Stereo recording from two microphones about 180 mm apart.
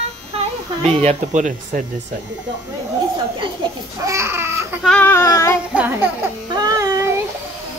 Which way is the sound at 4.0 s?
15° right (ahead or behind).